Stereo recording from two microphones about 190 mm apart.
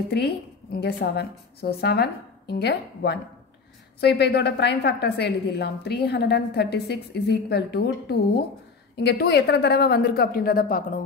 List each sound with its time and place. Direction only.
0.1 s a woman's voice: 55° left (ahead or behind)